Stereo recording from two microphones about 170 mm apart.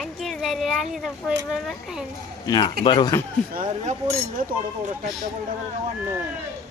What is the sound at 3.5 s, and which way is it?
Speech, 45° right (ahead or behind).